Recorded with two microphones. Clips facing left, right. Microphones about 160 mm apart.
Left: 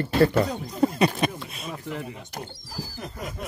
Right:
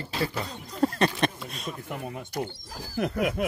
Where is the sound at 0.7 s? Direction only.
10° left (ahead or behind).